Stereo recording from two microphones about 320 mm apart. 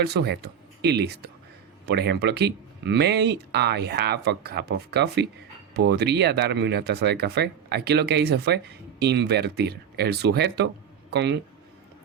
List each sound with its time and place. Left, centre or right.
0.0 s speech: right